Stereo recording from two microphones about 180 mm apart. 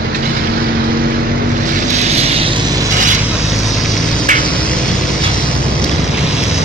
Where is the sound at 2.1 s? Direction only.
35° right (ahead or behind).